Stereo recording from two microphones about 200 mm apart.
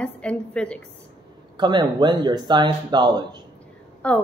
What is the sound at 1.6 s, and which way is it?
Speech, 20° right (ahead or behind).